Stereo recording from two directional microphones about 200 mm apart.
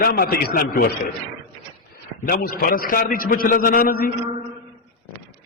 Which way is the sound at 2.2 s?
45° left (ahead or behind).